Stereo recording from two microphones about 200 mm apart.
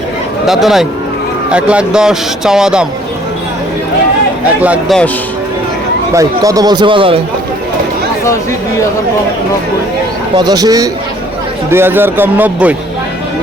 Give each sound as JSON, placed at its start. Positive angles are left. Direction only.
{"t": 0.4, "sound": "speech", "side_deg": 0}
{"t": 4.6, "sound": "a man's voice", "side_deg": -5}
{"t": 6.1, "sound": "a man's voice", "side_deg": -15}
{"t": 8.2, "sound": "speech", "side_deg": 15}
{"t": 10.3, "sound": "a man's voice", "side_deg": -20}